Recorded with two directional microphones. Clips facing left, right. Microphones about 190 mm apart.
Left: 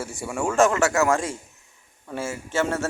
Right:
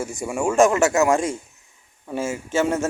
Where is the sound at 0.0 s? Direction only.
15° right (ahead or behind).